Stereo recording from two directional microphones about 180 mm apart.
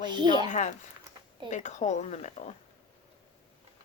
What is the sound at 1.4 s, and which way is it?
A woman's voice, 40° left (ahead or behind).